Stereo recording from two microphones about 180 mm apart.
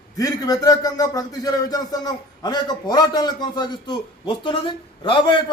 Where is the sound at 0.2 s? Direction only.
20° left (ahead or behind).